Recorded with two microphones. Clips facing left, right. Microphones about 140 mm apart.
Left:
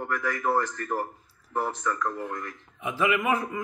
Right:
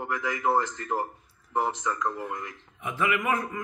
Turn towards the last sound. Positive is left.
turn(degrees=25)  # may be behind; listen again after turning